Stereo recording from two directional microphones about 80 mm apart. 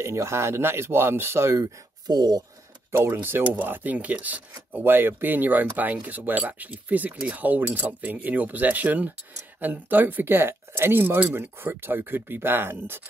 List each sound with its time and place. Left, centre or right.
0.0 s speech: right
1.6 s speech: right
3.0 s speech: right